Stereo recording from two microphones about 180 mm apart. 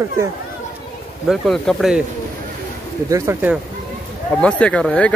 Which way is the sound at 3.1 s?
10° right (ahead or behind).